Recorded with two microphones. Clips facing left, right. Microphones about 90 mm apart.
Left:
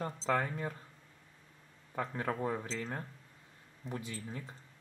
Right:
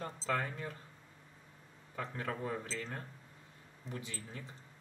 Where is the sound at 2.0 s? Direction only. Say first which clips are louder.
Left 4 dB; 25° left (ahead or behind).